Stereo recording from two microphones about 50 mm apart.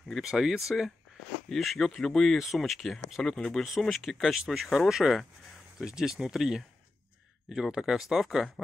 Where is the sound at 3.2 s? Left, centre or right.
Centre.